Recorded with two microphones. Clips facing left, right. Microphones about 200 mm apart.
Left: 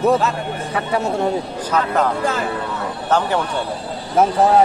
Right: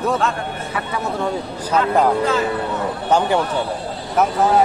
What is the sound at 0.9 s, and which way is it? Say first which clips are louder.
Speech: left 5 dB; 25° left (ahead or behind).